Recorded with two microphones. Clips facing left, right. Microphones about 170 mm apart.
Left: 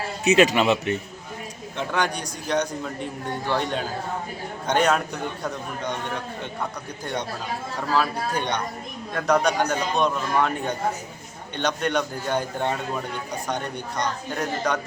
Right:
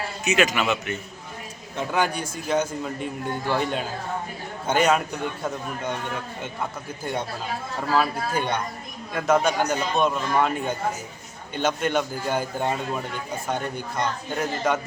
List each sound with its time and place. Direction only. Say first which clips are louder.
0.3 s speech: left 5 dB; 35° left (ahead or behind)
1.7 s a man's voice: right 1 dB; 5° right (ahead or behind)
7.0 s a man's voice: right 1 dB; 5° right (ahead or behind)